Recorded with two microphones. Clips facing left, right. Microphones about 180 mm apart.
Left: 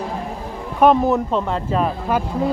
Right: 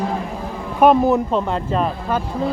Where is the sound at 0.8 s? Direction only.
5° right (ahead or behind).